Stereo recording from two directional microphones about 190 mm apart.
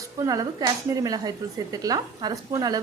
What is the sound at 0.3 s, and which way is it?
Speech, 20° right (ahead or behind).